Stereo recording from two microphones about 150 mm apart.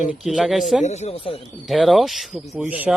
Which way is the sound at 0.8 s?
50° left (ahead or behind).